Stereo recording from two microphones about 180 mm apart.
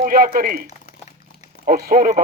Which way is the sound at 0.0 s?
50° right (ahead or behind).